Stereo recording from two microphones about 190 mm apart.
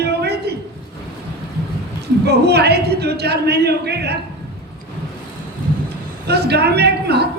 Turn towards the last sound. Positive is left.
turn(degrees=-60)  # may be behind; listen again after turning